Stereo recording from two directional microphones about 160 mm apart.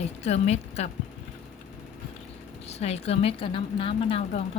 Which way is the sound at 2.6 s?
40° left (ahead or behind).